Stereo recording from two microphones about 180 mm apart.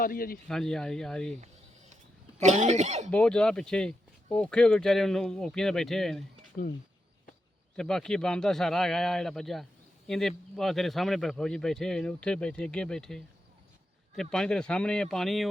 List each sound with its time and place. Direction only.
0.0 s speech: 50° left (ahead or behind)
0.4 s a man's voice: 5° left (ahead or behind)
2.4 s speech: 40° right (ahead or behind)
3.1 s a man's voice: 5° left (ahead or behind)
7.8 s a man's voice: 5° left (ahead or behind)